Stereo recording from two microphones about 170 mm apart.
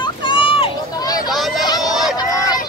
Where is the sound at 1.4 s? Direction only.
Centre (ahead or behind).